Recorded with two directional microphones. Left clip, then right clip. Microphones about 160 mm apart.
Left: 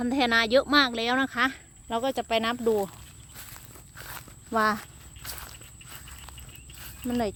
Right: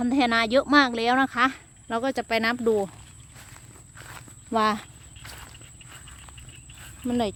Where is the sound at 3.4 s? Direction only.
75° left (ahead or behind).